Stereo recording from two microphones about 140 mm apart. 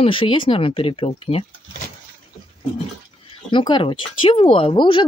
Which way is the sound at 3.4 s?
35° left (ahead or behind).